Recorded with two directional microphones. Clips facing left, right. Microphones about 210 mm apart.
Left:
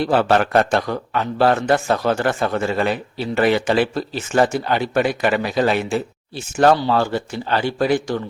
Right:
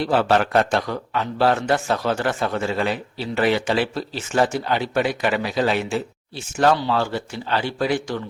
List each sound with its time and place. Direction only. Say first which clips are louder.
0.1 s a man's voice: left 1 dB; 50° left (ahead or behind)